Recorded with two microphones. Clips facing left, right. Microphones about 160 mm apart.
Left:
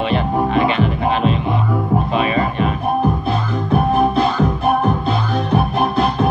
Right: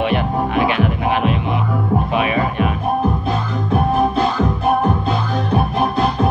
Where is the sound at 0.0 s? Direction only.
10° right (ahead or behind).